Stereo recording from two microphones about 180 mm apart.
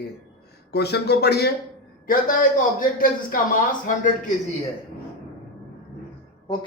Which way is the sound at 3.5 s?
45° left (ahead or behind).